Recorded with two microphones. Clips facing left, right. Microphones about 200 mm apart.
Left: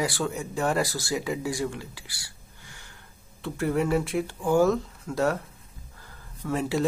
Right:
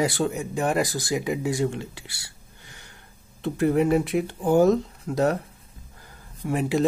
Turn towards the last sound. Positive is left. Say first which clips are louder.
# right 3 dB
turn(degrees=-15)  # may be behind; listen again after turning